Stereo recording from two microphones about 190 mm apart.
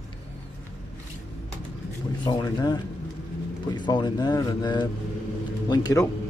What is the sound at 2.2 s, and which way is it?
Speech, 20° left (ahead or behind).